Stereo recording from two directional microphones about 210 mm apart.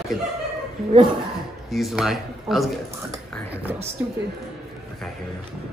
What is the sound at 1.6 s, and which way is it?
Speech, centre (ahead or behind).